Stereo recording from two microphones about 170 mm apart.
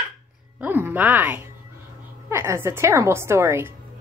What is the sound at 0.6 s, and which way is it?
A woman's voice, 10° right (ahead or behind).